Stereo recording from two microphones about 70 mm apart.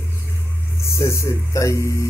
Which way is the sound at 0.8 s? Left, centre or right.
Left.